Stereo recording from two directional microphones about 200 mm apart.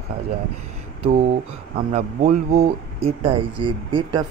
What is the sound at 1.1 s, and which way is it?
Speech, 30° right (ahead or behind).